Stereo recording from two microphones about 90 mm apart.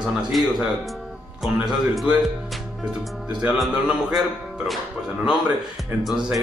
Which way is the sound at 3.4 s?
10° right (ahead or behind).